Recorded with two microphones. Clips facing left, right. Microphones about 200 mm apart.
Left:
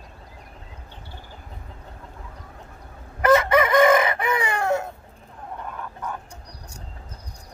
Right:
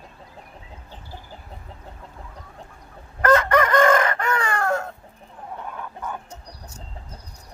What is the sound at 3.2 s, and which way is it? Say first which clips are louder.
Chicken: left 1 dB; 10° left (ahead or behind).